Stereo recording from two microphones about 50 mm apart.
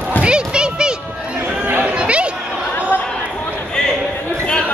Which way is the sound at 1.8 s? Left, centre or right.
Right.